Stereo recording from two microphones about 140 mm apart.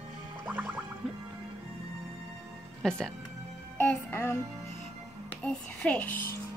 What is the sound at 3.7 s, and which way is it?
Music, 15° left (ahead or behind).